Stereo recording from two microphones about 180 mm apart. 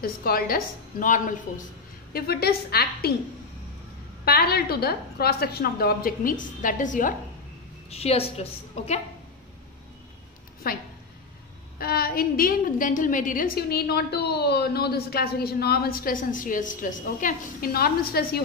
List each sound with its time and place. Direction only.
0.0 s a woman's voice: 55° left (ahead or behind)
2.1 s a woman's voice: 60° left (ahead or behind)
4.2 s a woman's voice: 60° left (ahead or behind)
7.9 s a woman's voice: 35° left (ahead or behind)
10.6 s a woman's voice: 55° left (ahead or behind)